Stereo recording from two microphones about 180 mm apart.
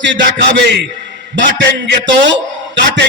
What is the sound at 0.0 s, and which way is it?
A man's voice, 75° right (ahead or behind).